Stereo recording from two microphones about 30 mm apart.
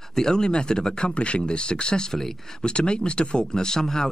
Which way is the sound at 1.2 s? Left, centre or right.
Left.